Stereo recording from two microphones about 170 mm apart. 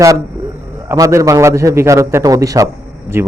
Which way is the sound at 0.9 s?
20° right (ahead or behind).